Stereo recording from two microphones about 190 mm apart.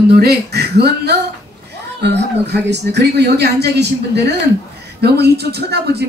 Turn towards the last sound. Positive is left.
turn(degrees=-60)  # may be behind; listen again after turning